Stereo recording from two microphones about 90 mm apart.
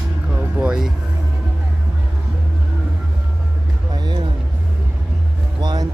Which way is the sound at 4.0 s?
50° right (ahead or behind).